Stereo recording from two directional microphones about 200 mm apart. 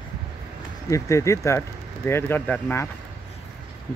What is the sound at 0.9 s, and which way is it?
Speech, 15° left (ahead or behind).